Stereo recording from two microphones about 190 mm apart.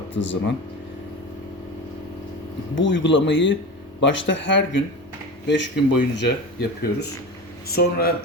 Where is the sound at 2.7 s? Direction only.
75° left (ahead or behind).